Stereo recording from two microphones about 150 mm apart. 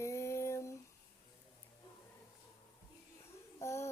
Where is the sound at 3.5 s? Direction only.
20° left (ahead or behind).